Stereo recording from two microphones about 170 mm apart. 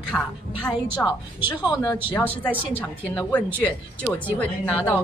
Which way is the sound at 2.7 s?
10° left (ahead or behind).